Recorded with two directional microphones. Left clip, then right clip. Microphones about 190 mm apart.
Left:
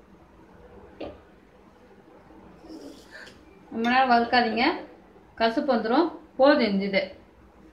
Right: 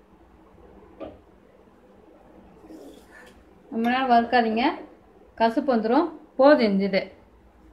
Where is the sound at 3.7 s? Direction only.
45° right (ahead or behind).